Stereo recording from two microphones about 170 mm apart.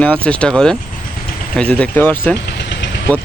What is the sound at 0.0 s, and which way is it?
Speech, 5° left (ahead or behind).